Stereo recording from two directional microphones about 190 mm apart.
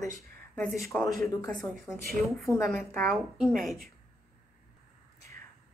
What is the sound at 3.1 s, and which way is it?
Speech, centre (ahead or behind).